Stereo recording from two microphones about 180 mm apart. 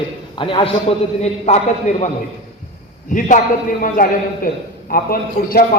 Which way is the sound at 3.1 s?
45° left (ahead or behind).